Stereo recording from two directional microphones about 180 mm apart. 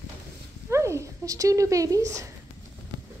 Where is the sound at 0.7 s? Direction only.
15° right (ahead or behind).